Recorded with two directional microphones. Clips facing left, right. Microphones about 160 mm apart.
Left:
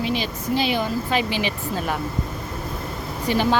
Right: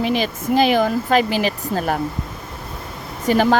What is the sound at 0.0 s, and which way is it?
Speech, 50° right (ahead or behind).